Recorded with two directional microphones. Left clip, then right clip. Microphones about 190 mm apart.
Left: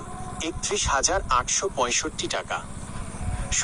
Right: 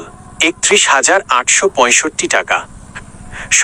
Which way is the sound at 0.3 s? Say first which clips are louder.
Right 17 dB; 40° right (ahead or behind).